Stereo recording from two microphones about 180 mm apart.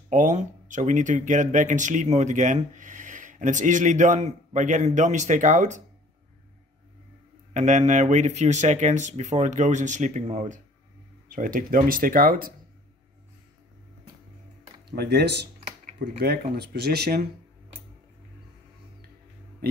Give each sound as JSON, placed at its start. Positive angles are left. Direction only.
{"t": 0.1, "sound": "speech", "side_deg": -45}
{"t": 7.5, "sound": "speech", "side_deg": -40}
{"t": 14.9, "sound": "speech", "side_deg": -65}